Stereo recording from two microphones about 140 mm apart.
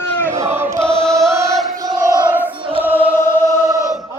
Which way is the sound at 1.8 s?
25° right (ahead or behind).